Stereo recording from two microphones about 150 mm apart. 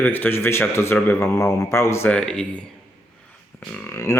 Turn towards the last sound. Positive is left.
turn(degrees=20)  # may be behind; listen again after turning